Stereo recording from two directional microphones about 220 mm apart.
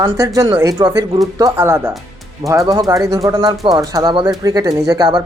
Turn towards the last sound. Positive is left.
turn(degrees=-20)  # may be behind; listen again after turning